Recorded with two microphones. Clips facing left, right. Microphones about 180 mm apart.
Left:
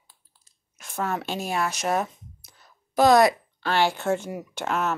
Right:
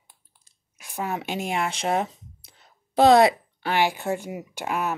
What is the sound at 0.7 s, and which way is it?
Speech, 15° right (ahead or behind).